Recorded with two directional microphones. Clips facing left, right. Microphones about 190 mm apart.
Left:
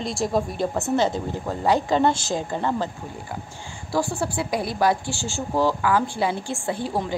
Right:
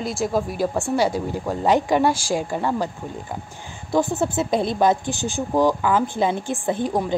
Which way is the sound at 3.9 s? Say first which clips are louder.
Right 4 dB; 20° right (ahead or behind).